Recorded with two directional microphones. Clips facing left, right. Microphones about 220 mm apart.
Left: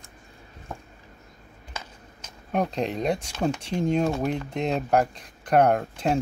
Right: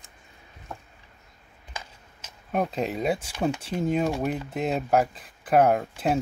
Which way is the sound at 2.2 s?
5° right (ahead or behind).